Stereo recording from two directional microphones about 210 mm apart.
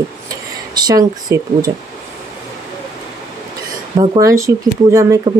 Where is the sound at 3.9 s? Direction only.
15° right (ahead or behind).